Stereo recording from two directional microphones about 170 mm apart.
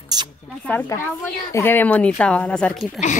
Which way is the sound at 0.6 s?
10° left (ahead or behind).